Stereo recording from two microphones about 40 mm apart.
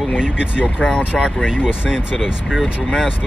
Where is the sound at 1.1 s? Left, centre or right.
Centre.